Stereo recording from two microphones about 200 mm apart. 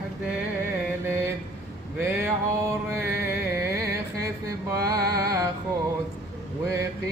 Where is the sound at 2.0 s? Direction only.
15° right (ahead or behind).